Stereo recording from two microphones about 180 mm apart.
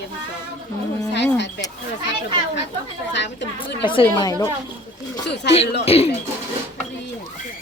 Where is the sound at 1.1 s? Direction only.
75° left (ahead or behind).